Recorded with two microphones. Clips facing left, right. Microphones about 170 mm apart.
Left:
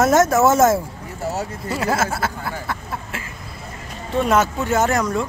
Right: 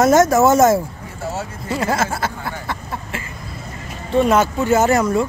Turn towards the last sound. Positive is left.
turn(degrees=-5)  # may be behind; listen again after turning